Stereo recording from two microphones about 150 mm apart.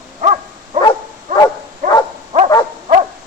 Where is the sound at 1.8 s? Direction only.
65° right (ahead or behind).